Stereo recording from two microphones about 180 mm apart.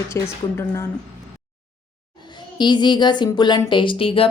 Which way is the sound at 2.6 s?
25° left (ahead or behind).